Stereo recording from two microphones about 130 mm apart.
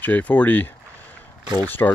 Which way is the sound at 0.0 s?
10° left (ahead or behind).